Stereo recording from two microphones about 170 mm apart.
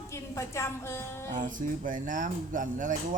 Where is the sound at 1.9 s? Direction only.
50° right (ahead or behind).